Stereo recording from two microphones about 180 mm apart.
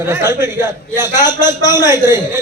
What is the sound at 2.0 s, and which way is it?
Speech, 15° right (ahead or behind).